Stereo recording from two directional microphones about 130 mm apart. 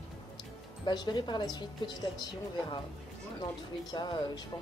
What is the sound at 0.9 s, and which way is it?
Speech, 35° left (ahead or behind).